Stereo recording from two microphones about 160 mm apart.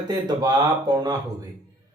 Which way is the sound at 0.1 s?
25° right (ahead or behind).